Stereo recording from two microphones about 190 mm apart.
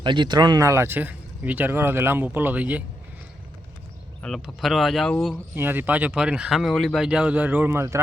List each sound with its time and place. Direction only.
0.0 s speech: 25° right (ahead or behind); by 2.8 s 10° right (ahead or behind)
4.2 s speech: centre (ahead or behind)
5.5 s speech: 10° right (ahead or behind)